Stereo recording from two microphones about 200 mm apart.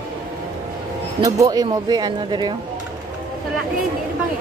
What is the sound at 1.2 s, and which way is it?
Speech, 15° right (ahead or behind).